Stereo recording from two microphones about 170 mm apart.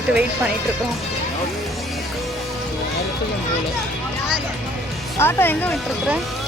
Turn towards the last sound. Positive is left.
turn(degrees=10)  # may be behind; listen again after turning